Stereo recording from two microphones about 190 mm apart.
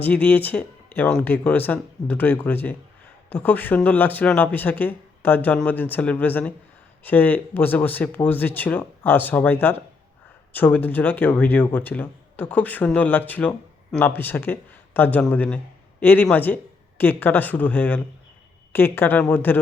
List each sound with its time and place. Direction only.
0.0 s speech: 10° left (ahead or behind)